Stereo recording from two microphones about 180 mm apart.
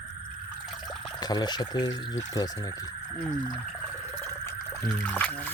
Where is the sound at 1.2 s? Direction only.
25° left (ahead or behind).